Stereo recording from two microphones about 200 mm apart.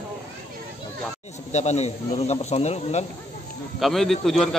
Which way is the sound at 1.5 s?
35° left (ahead or behind).